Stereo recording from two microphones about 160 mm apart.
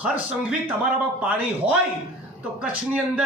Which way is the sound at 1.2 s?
10° right (ahead or behind).